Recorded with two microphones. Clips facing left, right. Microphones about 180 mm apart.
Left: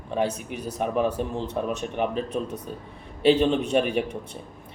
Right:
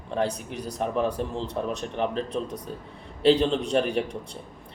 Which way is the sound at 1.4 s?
35° right (ahead or behind).